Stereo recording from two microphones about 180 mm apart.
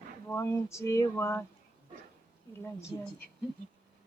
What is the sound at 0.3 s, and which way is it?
Speech, 15° left (ahead or behind).